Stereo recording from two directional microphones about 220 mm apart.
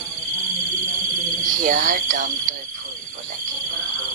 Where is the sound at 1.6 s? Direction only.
40° right (ahead or behind).